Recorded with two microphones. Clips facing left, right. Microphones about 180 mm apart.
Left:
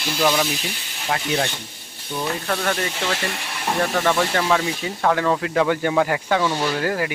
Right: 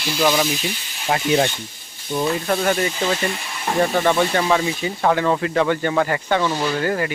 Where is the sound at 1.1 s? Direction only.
15° right (ahead or behind).